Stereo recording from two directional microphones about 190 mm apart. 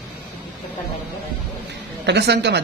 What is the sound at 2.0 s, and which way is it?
Speech, 60° right (ahead or behind).